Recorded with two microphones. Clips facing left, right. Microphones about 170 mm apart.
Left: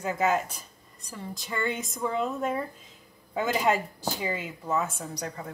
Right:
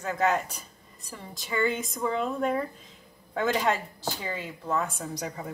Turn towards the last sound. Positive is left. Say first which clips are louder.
# right 1 dB
turn(degrees=-5)  # may be behind; listen again after turning